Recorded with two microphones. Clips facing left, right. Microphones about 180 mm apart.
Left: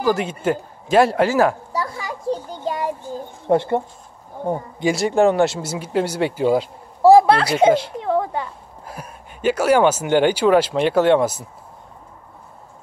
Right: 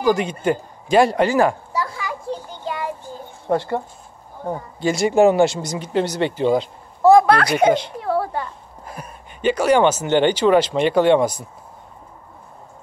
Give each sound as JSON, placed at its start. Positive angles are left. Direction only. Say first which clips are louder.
{"t": 0.0, "sound": "speech", "louder": "right 1 dB", "side_deg": 0}
{"t": 1.7, "sound": "children playing", "louder": "even", "side_deg": 35}
{"t": 3.4, "sound": "speech", "louder": "left 3 dB", "side_deg": 20}
{"t": 4.9, "sound": "speech", "louder": "right 2 dB", "side_deg": -5}
{"t": 7.0, "sound": "a sound", "louder": "left 1 dB", "side_deg": 30}
{"t": 8.0, "sound": "a sound", "louder": "left 1 dB", "side_deg": 15}
{"t": 8.8, "sound": "speech", "louder": "even", "side_deg": 5}